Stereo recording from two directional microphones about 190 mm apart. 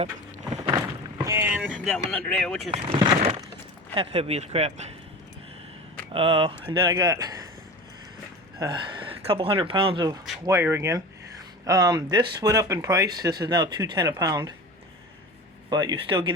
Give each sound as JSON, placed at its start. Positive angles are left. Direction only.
{"t": 0.5, "sound": "a sound", "side_deg": -20}
{"t": 1.2, "sound": "boat", "side_deg": -15}
{"t": 1.7, "sound": "speech", "side_deg": 0}
{"t": 2.7, "sound": "speech", "side_deg": -30}
{"t": 6.1, "sound": "speech", "side_deg": -30}
{"t": 8.5, "sound": "speech", "side_deg": -20}
{"t": 15.7, "sound": "speech", "side_deg": -20}